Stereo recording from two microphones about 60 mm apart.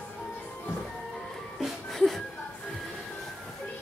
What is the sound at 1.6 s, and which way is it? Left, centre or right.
Music, centre.